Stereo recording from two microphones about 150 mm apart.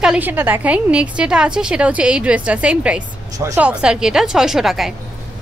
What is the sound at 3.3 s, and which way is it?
Speech, 20° right (ahead or behind).